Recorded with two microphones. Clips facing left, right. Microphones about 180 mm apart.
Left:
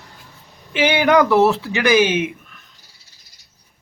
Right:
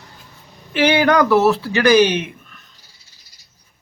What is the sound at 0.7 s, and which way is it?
Speech, 15° left (ahead or behind).